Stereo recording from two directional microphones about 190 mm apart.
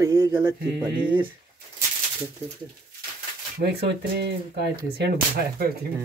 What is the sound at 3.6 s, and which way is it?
Speech, 60° right (ahead or behind).